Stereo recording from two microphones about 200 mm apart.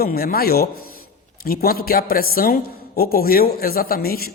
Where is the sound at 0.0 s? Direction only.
50° left (ahead or behind).